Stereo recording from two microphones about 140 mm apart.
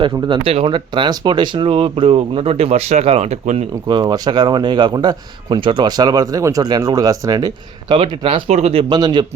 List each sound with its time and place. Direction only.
0.0 s speech: 40° right (ahead or behind)
3.8 s a man's voice: 30° right (ahead or behind)
7.9 s speech: 40° right (ahead or behind)
8.4 s speech: 50° right (ahead or behind); by 9.2 s 30° right (ahead or behind)